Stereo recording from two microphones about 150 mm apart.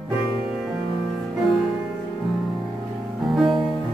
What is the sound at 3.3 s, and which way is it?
Music, centre (ahead or behind).